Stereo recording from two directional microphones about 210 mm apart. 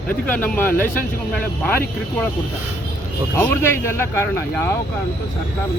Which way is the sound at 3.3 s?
10° left (ahead or behind).